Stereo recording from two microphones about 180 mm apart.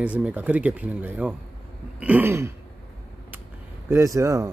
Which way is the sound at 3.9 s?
15° right (ahead or behind).